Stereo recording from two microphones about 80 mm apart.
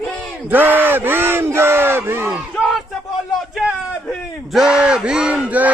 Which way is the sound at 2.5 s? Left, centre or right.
Centre.